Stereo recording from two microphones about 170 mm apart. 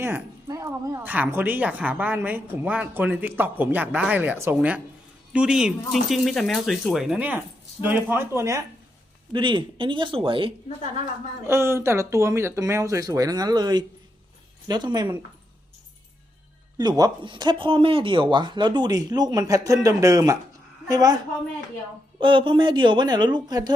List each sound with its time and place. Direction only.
0.0 s a woman's voice: 15° right (ahead or behind)
9.3 s speech: 30° right (ahead or behind)
11.4 s speech: 15° right (ahead or behind)
16.7 s speech: 25° right (ahead or behind)
22.2 s speech: 30° right (ahead or behind)